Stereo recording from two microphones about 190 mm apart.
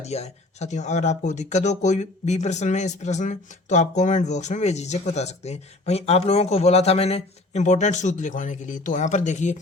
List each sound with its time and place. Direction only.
0.0 s speech: 35° left (ahead or behind)